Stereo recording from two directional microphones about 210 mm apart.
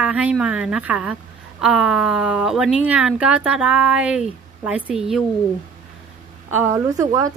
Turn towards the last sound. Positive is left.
turn(degrees=-15)  # may be behind; listen again after turning